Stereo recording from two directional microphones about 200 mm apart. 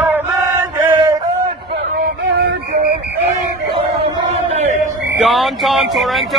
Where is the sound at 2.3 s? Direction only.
55° right (ahead or behind).